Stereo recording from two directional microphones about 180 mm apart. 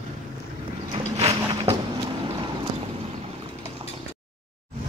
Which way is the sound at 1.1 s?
35° right (ahead or behind).